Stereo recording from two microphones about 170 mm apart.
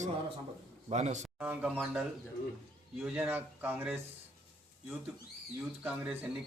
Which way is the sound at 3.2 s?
10° right (ahead or behind).